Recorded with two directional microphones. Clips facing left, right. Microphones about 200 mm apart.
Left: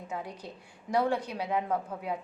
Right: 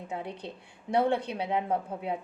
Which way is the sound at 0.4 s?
30° right (ahead or behind).